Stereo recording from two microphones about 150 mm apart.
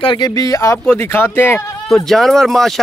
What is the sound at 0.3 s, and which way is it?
Speech, 20° left (ahead or behind).